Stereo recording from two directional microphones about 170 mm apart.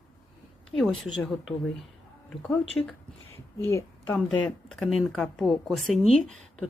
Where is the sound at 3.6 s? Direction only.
15° left (ahead or behind).